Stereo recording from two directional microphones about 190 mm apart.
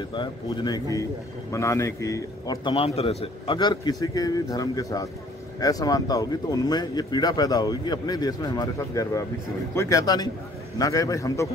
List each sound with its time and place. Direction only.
0.1 s a man's voice: 25° left (ahead or behind)